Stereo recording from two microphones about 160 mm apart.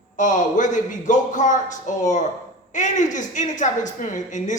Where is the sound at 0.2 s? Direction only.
50° left (ahead or behind).